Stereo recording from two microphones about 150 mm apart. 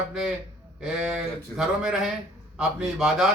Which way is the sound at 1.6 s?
5° right (ahead or behind).